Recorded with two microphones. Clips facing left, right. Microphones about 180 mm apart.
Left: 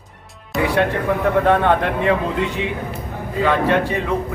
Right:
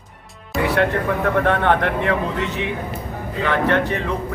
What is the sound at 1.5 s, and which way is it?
Speech, 15° left (ahead or behind).